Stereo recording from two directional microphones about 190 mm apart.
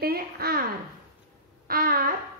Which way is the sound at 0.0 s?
55° right (ahead or behind).